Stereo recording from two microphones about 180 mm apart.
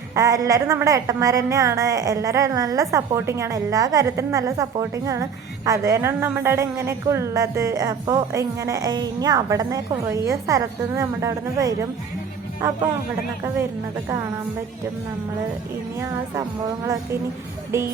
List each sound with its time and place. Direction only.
0.1 s a woman's voice: 20° right (ahead or behind)
16.8 s a woman's voice: 15° right (ahead or behind)